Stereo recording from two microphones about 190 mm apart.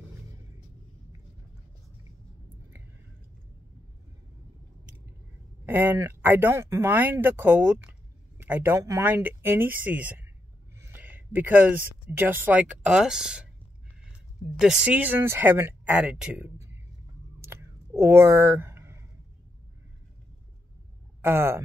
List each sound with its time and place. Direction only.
5.7 s speech: 10° right (ahead or behind)
14.6 s speech: 5° right (ahead or behind)
17.4 s a sound: 15° right (ahead or behind)
21.2 s speech: 10° right (ahead or behind)